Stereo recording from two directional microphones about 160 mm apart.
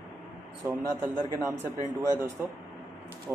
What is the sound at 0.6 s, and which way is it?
Speech, 15° right (ahead or behind).